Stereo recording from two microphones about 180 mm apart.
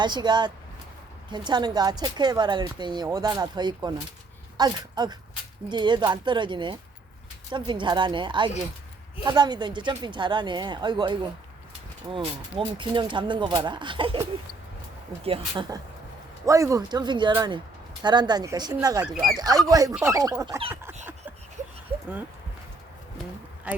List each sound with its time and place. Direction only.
0.0 s speech: 25° right (ahead or behind)
16.5 s speech: 15° right (ahead or behind)
19.1 s speech: centre (ahead or behind)
19.4 s speech: 20° right (ahead or behind)
19.9 s speech: 10° right (ahead or behind)
20.1 s speech: 20° right (ahead or behind)